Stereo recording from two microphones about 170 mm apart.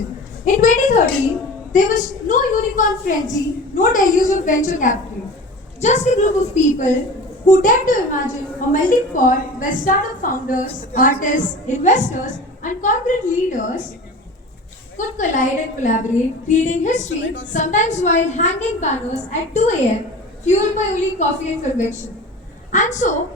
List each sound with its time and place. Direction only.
0.4 s a sound: 50° left (ahead or behind)
1.7 s a woman's voice: 50° left (ahead or behind)
14.9 s a woman's voice: 45° left (ahead or behind)